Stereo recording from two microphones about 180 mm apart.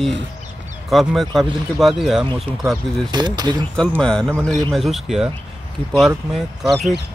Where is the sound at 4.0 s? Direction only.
5° left (ahead or behind).